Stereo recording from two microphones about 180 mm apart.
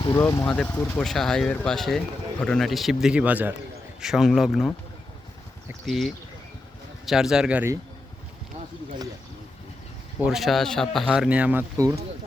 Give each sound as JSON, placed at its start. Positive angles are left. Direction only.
{"t": 0.0, "sound": "speech", "side_deg": 15}
{"t": 1.0, "sound": "a man's voice", "side_deg": 0}
{"t": 5.8, "sound": "a man's voice", "side_deg": 0}
{"t": 10.2, "sound": "a man's voice", "side_deg": 0}